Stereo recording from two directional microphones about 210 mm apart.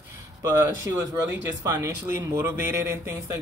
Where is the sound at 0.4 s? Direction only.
15° right (ahead or behind).